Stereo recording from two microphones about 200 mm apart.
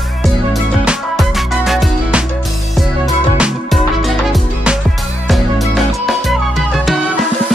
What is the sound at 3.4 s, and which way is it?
Music, centre (ahead or behind).